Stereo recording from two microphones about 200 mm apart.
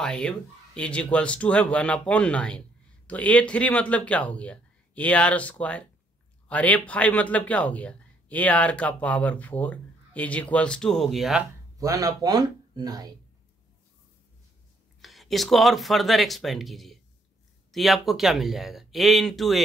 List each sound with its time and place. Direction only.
0.0 s speech: 5° left (ahead or behind)
11.8 s speech: 15° right (ahead or behind)
15.0 s speech: centre (ahead or behind)